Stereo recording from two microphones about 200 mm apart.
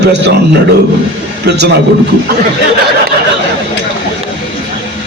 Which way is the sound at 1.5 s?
55° right (ahead or behind).